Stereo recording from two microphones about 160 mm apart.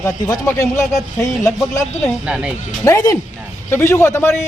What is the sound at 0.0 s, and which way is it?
Speech, 20° left (ahead or behind).